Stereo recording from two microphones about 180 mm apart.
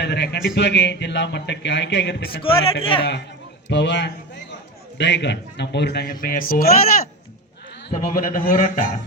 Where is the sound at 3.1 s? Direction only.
70° left (ahead or behind).